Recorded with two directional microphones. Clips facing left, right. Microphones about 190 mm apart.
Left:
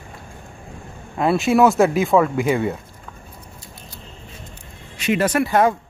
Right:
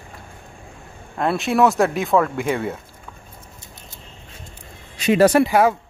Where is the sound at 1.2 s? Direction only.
Centre (ahead or behind).